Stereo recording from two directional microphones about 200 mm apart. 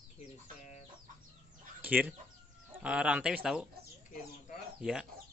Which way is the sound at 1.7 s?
10° right (ahead or behind).